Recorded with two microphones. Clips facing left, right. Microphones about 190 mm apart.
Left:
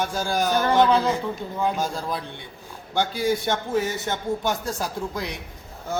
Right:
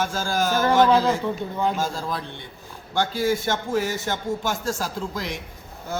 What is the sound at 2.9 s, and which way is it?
A man's voice, 15° left (ahead or behind).